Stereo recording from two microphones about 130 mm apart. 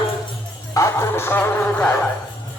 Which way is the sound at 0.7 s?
25° left (ahead or behind).